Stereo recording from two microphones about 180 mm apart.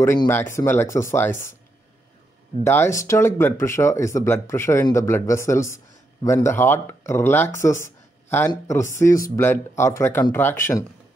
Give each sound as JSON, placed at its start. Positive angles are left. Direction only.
{"t": 0.0, "sound": "speech", "side_deg": 15}
{"t": 2.6, "sound": "speech", "side_deg": 15}